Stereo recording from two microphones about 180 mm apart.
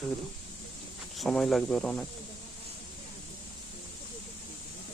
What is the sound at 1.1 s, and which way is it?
Speech, 5° left (ahead or behind).